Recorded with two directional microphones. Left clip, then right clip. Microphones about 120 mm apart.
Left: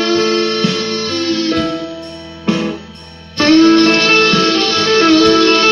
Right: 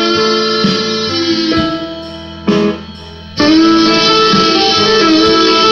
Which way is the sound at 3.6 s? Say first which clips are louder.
Even; 40° right (ahead or behind).